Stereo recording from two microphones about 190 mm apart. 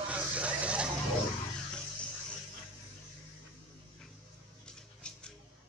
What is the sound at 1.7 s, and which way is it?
Music, 5° left (ahead or behind).